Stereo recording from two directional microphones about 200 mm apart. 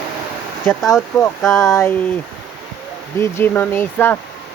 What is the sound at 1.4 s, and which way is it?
Speech, centre (ahead or behind).